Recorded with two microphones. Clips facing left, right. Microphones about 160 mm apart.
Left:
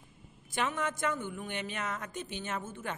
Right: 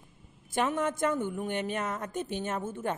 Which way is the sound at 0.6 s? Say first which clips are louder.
Right 5 dB; 45° right (ahead or behind).